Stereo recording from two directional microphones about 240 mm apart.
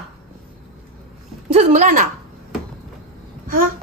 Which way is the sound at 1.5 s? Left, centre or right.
Right.